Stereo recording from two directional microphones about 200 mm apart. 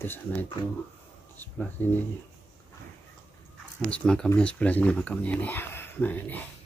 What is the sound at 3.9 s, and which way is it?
Speech, 5° left (ahead or behind).